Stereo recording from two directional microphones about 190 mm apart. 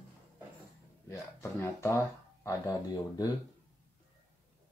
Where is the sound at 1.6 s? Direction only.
15° left (ahead or behind).